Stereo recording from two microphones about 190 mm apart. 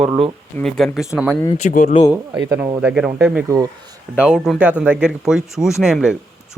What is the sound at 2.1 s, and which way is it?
Speech, 15° right (ahead or behind).